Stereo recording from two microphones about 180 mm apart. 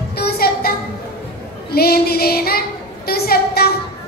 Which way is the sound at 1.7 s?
60° left (ahead or behind).